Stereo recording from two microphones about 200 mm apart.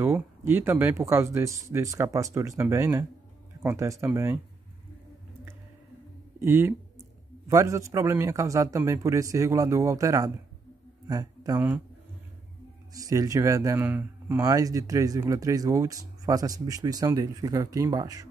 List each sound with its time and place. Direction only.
0.0 s speech: 10° right (ahead or behind)
6.4 s speech: 10° right (ahead or behind)
12.9 s speech: 15° right (ahead or behind)